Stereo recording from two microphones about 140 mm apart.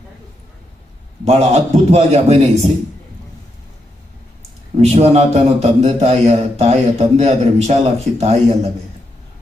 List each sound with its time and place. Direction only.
1.2 s a man's voice: 50° right (ahead or behind)
4.7 s a man's voice: 50° right (ahead or behind)